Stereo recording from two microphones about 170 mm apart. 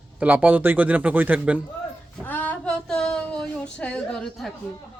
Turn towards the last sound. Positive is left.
turn(degrees=0)  # may be behind; listen again after turning